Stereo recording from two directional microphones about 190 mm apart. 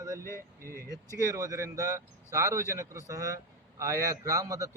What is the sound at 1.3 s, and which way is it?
Speech, 15° right (ahead or behind).